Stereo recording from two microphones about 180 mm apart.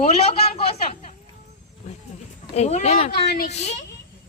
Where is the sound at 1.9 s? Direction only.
40° left (ahead or behind).